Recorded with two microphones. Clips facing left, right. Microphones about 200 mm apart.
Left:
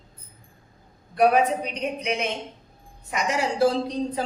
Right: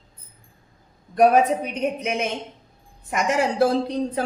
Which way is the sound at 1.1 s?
45° right (ahead or behind).